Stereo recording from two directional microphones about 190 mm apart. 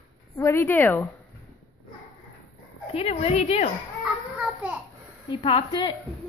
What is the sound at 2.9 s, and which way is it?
Speech, 30° left (ahead or behind).